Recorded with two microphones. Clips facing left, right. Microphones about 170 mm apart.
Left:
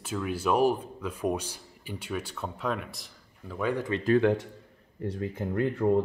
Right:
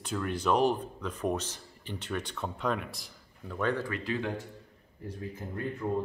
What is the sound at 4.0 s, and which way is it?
Speech, 60° left (ahead or behind).